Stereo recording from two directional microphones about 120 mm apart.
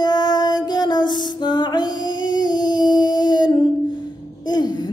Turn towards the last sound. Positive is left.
turn(degrees=35)  # may be behind; listen again after turning